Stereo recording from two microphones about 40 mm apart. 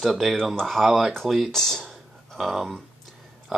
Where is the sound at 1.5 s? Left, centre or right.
Centre.